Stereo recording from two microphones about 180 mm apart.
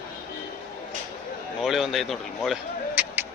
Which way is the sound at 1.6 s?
Centre (ahead or behind).